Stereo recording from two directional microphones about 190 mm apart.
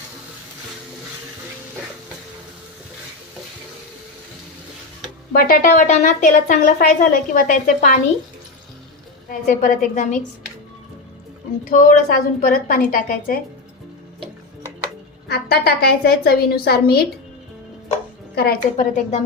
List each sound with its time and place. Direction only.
5.3 s a woman's voice: 50° left (ahead or behind)
9.3 s a woman's voice: 45° left (ahead or behind)
11.7 s a woman's voice: 45° left (ahead or behind)
15.3 s a woman's voice: 55° left (ahead or behind)
18.3 s a woman's voice: 50° left (ahead or behind)